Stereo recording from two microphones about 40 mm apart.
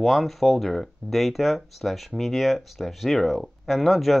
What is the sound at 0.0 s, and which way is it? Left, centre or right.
Speech, centre.